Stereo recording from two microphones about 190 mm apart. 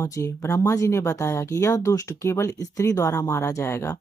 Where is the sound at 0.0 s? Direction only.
15° left (ahead or behind).